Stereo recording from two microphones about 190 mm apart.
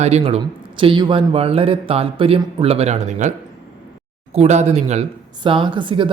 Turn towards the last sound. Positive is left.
turn(degrees=-25)  # may be behind; listen again after turning